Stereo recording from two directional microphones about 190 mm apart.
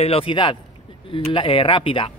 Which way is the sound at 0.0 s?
30° left (ahead or behind).